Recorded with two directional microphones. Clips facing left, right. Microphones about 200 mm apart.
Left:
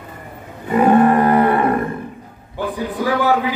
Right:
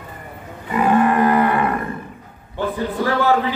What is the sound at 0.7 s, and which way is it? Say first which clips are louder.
Cattle: left 4 dB; 40° left (ahead or behind).